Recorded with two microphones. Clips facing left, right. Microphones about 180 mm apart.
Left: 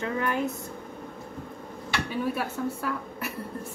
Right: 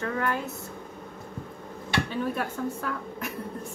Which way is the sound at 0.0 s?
20° left (ahead or behind).